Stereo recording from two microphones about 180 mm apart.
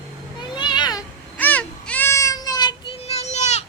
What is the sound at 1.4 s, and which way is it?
Child singing, 10° left (ahead or behind).